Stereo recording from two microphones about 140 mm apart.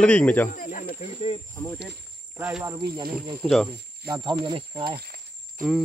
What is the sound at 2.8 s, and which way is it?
Speech, 35° right (ahead or behind).